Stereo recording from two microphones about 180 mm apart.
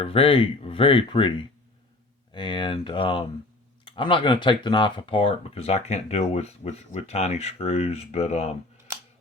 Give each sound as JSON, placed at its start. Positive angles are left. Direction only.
{"t": 0.0, "sound": "speech", "side_deg": 30}